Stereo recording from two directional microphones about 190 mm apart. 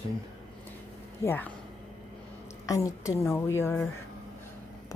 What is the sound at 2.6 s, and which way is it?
A woman's voice, 15° left (ahead or behind).